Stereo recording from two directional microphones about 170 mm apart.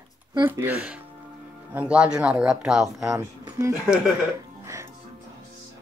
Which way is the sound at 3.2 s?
15° right (ahead or behind).